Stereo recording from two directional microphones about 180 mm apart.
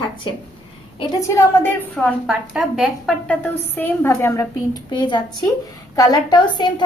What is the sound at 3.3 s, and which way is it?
A woman's voice, 10° left (ahead or behind).